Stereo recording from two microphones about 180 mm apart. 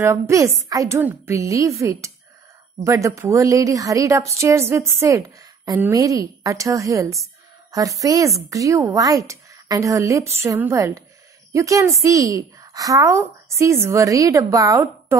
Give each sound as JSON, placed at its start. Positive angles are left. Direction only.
{"t": 0.0, "sound": "a woman's voice", "side_deg": -15}